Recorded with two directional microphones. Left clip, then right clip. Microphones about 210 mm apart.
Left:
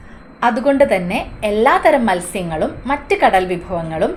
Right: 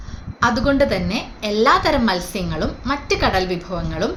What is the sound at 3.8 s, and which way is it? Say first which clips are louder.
Speech: left 7 dB; 10° left (ahead or behind).